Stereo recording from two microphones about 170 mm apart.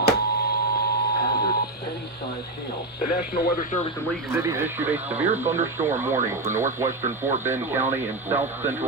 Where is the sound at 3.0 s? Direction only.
50° left (ahead or behind).